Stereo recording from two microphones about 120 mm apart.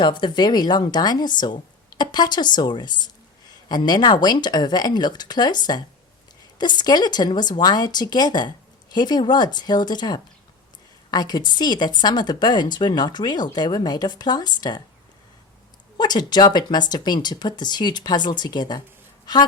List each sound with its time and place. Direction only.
0.0 s speech: 40° left (ahead or behind)
16.0 s speech: 35° left (ahead or behind)